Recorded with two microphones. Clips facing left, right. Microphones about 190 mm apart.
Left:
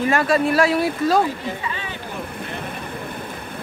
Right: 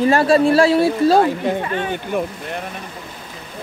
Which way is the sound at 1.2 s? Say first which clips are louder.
Right 5 dB; 60° right (ahead or behind).